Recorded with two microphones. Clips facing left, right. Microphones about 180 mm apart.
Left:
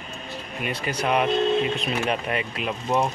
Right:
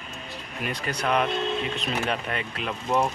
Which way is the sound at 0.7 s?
10° left (ahead or behind).